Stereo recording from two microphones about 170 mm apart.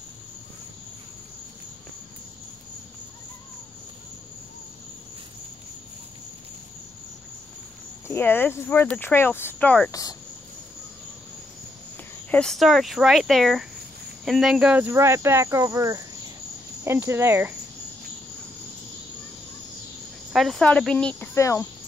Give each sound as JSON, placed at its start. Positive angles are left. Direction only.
{"t": 8.1, "sound": "speech", "side_deg": 10}
{"t": 9.8, "sound": "speech", "side_deg": 20}
{"t": 12.3, "sound": "speech", "side_deg": 5}
{"t": 20.3, "sound": "speech", "side_deg": 0}